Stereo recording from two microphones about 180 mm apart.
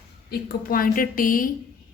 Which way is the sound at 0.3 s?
55° left (ahead or behind).